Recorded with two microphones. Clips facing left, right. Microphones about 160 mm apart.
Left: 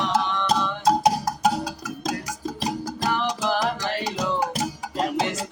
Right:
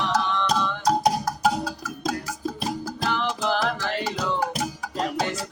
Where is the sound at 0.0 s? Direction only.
15° left (ahead or behind).